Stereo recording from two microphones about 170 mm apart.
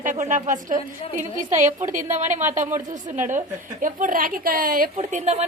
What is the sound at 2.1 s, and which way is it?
A woman's voice, 45° right (ahead or behind).